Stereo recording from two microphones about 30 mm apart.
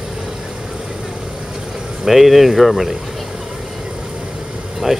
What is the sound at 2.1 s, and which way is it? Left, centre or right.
Speech, centre.